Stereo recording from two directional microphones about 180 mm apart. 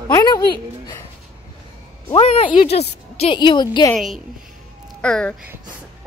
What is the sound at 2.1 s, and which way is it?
A woman's voice, 30° left (ahead or behind).